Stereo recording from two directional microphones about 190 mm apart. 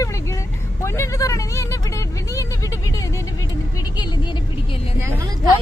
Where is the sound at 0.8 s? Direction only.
15° left (ahead or behind).